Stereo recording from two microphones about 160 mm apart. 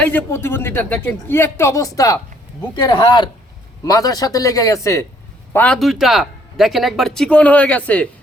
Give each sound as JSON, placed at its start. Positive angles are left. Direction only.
{"t": 0.0, "sound": "speech", "side_deg": 10}
{"t": 5.5, "sound": "speech", "side_deg": 5}